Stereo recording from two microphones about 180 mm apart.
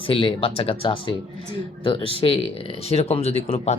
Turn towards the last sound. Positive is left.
turn(degrees=35)  # may be behind; listen again after turning